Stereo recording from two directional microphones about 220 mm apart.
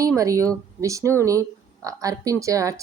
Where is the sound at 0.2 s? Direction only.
15° right (ahead or behind).